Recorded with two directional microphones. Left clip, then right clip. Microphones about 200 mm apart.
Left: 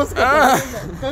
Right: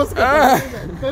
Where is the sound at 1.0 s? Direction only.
55° left (ahead or behind).